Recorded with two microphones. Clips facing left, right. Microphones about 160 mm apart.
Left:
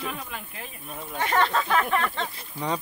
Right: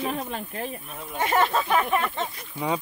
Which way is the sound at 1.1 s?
15° right (ahead or behind).